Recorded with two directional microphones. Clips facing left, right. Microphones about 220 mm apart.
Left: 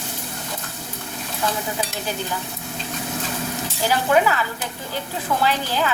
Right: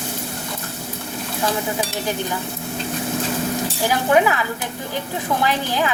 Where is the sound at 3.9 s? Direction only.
15° right (ahead or behind).